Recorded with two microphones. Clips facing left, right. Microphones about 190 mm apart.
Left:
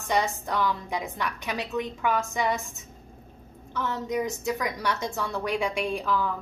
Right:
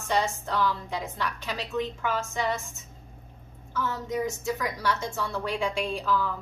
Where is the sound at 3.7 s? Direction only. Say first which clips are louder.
Left 1 dB; 20° left (ahead or behind).